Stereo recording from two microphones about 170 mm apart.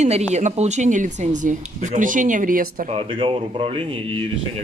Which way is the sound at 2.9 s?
30° right (ahead or behind).